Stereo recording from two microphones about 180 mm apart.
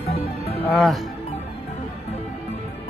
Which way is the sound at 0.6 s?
5° left (ahead or behind).